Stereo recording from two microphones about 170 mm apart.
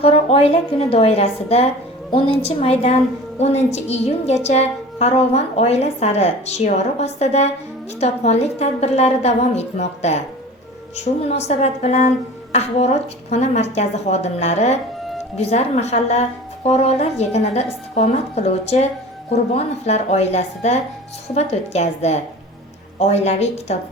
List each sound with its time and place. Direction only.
0.0 s a woman's voice: 35° left (ahead or behind)